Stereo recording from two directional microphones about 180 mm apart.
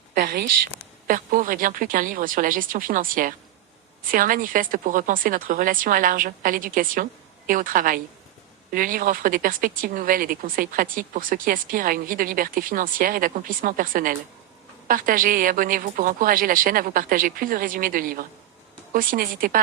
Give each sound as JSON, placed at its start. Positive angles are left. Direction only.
{"t": 0.1, "sound": "a woman's voice", "side_deg": -55}